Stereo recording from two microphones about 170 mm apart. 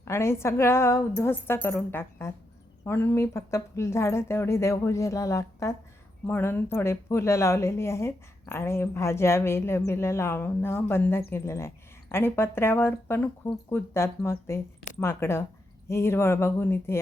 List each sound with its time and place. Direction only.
0.0 s a woman's voice: 15° left (ahead or behind)